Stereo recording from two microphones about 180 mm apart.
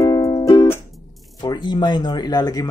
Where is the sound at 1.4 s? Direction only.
25° left (ahead or behind).